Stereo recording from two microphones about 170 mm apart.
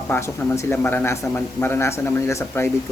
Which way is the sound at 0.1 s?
15° left (ahead or behind).